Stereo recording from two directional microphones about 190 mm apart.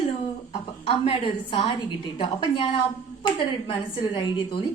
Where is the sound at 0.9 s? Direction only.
25° left (ahead or behind).